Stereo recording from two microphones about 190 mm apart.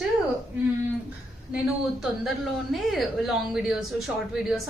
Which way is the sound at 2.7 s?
Centre (ahead or behind).